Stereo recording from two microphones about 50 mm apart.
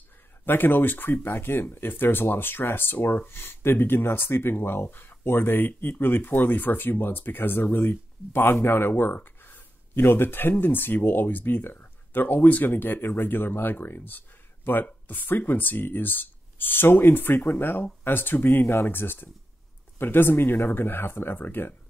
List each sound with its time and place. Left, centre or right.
0.5 s speech: left